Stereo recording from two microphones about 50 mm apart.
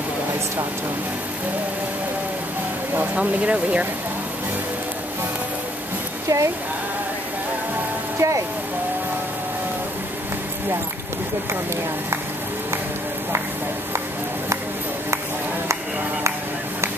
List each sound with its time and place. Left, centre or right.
3.2 s speech: right
6.2 s speech: right
8.2 s speech: right